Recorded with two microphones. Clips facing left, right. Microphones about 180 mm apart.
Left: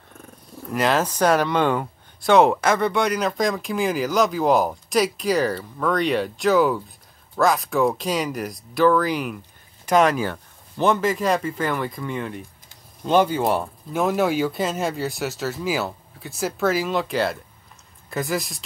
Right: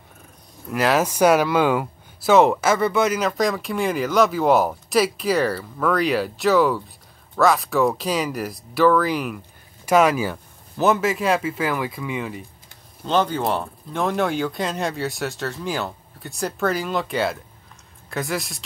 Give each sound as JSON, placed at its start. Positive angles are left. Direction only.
{"t": 0.7, "sound": "speech", "side_deg": -5}
{"t": 13.0, "sound": "speech", "side_deg": 10}